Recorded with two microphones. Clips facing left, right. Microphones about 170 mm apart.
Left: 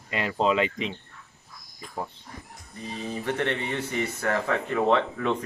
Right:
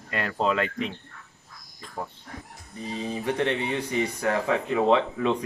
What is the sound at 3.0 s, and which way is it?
Speech, 15° right (ahead or behind).